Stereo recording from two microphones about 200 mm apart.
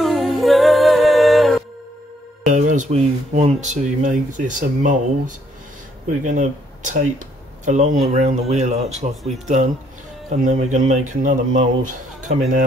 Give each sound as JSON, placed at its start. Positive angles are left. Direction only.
{"t": 0.0, "sound": "humming", "side_deg": 0}
{"t": 2.4, "sound": "speech", "side_deg": -40}
{"t": 9.1, "sound": "speech", "side_deg": 0}
{"t": 10.3, "sound": "speech", "side_deg": -35}